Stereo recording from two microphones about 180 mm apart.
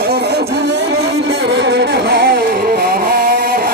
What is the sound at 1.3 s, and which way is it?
Music, 70° right (ahead or behind).